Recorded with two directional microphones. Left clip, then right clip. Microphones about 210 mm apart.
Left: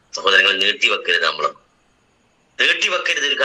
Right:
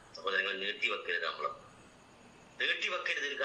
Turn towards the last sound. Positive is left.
turn(degrees=50)  # may be behind; listen again after turning